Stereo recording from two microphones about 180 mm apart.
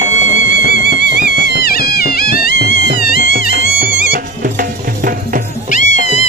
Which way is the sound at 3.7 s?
55° right (ahead or behind).